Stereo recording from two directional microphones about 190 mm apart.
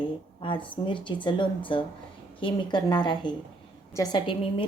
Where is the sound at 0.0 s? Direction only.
25° left (ahead or behind).